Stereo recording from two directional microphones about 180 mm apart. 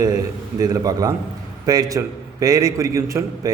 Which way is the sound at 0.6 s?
20° right (ahead or behind).